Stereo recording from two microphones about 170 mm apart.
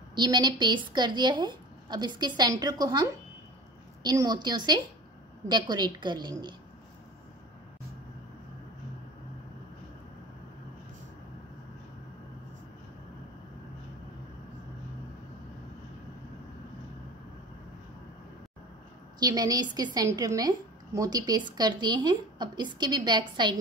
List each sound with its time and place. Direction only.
0.1 s a woman's voice: 25° right (ahead or behind)
19.1 s a woman's voice: 25° right (ahead or behind)